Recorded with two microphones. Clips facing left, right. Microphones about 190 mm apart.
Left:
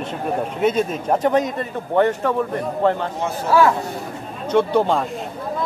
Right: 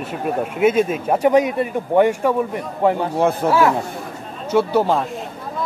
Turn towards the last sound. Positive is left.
turn(degrees=-5)  # may be behind; listen again after turning